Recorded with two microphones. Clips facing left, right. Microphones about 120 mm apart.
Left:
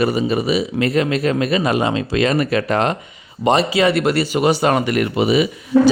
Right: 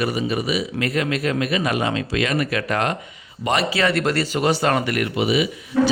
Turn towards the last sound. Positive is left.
turn(degrees=40)  # may be behind; listen again after turning